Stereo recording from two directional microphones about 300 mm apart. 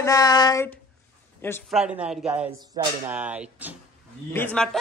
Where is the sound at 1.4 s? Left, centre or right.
Centre.